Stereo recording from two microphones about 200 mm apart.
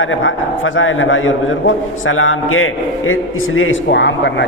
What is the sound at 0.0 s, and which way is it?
A man's voice, 80° left.